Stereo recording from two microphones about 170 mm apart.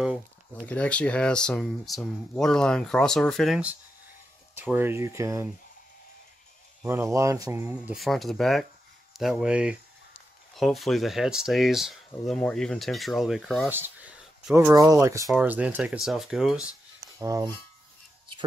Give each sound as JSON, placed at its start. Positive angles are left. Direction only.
{"t": 0.0, "sound": "speech", "side_deg": -5}
{"t": 0.7, "sound": "speech", "side_deg": 5}
{"t": 6.8, "sound": "speech", "side_deg": -15}
{"t": 13.7, "sound": "speech", "side_deg": -10}
{"t": 15.2, "sound": "speech", "side_deg": -5}
{"t": 17.2, "sound": "a sound", "side_deg": -20}